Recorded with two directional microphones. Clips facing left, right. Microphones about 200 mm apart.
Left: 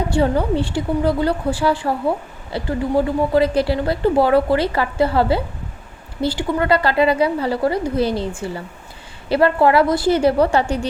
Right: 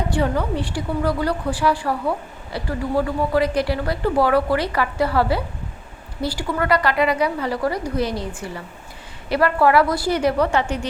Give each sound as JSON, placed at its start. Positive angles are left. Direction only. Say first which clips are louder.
{"t": 0.1, "sound": "a woman's voice", "louder": "left 5 dB", "side_deg": 30}